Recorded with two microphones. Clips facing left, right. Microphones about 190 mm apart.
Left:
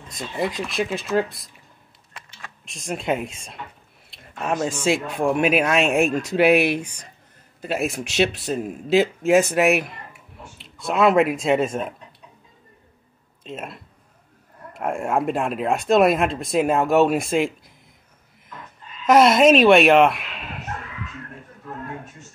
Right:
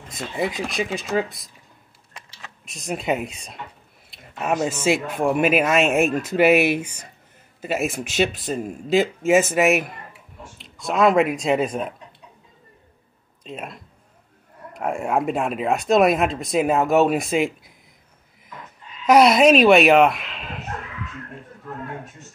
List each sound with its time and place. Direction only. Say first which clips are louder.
0.5 s speech: right 1 dB; 50° right (ahead or behind)
0.9 s speech: left 3 dB; centre (ahead or behind)
2.6 s speech: right 1 dB; centre (ahead or behind)
13.4 s speech: even; centre (ahead or behind)
19.0 s speech: even; centre (ahead or behind)